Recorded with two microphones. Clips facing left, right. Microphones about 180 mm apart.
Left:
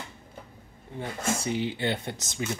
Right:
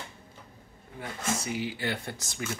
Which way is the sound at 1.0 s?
30° left (ahead or behind).